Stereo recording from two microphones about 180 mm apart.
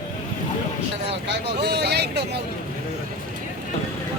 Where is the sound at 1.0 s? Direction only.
70° right (ahead or behind).